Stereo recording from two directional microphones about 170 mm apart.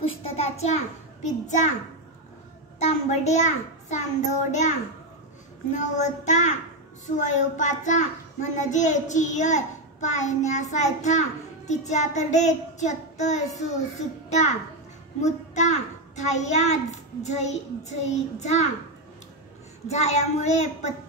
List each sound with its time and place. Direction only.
0.2 s a child's voice: 40° left (ahead or behind)
2.8 s a child's voice: 40° left (ahead or behind)
15.1 s a child's voice: 45° left (ahead or behind)
19.9 s a child's voice: 40° left (ahead or behind)